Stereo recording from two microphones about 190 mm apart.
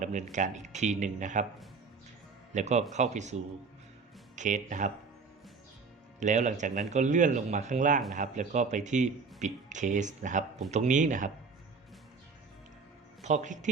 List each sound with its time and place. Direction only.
0.0 s speech: 40° right (ahead or behind)
2.5 s a man's voice: 40° right (ahead or behind)
6.1 s speech: 40° right (ahead or behind)
13.2 s speech: 40° right (ahead or behind)